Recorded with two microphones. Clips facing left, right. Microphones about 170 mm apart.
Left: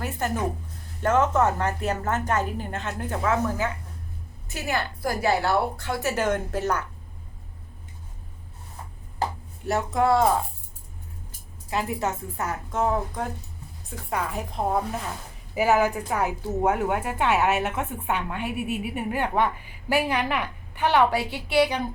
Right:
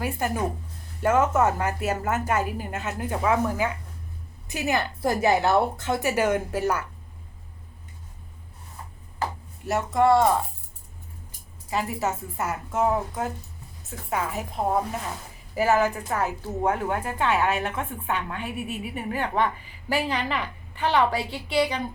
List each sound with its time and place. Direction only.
0.0 s a woman's voice: 10° right (ahead or behind)
9.6 s a woman's voice: centre (ahead or behind)
11.7 s a woman's voice: centre (ahead or behind)
15.5 s a woman's voice: 10° left (ahead or behind)